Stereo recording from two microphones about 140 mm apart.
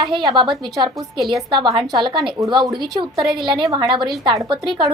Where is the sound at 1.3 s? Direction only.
35° right (ahead or behind).